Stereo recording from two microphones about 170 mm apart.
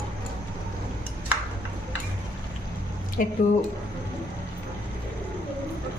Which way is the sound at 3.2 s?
55° left (ahead or behind).